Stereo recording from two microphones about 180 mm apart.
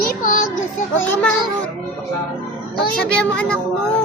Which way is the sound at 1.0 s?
10° left (ahead or behind).